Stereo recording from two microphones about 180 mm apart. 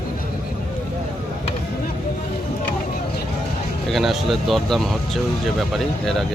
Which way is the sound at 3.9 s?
Centre (ahead or behind).